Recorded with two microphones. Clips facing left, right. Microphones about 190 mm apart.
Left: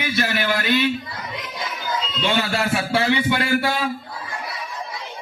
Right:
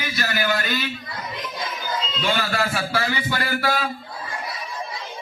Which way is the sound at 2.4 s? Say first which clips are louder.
Left 2 dB; 25° left (ahead or behind).